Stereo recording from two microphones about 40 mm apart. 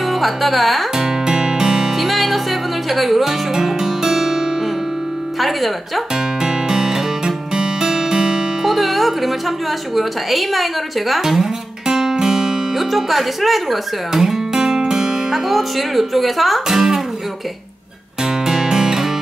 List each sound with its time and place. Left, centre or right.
0.0 s music: centre
0.9 s music: centre
5.4 s a woman's voice: centre
6.1 s music: centre
8.7 s a woman's voice: centre
11.1 s music: centre
12.7 s a woman's voice: centre
14.1 s music: centre
15.4 s a woman's voice: centre
18.2 s music: centre